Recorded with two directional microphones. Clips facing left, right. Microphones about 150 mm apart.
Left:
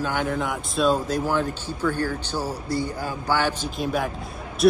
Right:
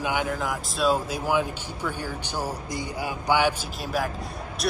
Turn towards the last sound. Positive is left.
turn(degrees=0)  # may be behind; listen again after turning